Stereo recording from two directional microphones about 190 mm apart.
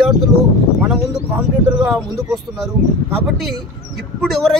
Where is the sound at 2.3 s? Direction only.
Centre (ahead or behind).